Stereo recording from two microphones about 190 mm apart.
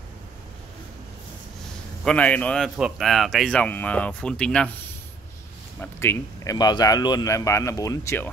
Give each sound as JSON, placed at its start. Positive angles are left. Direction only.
{"t": 2.0, "sound": "speech", "side_deg": 5}
{"t": 5.8, "sound": "speech", "side_deg": 10}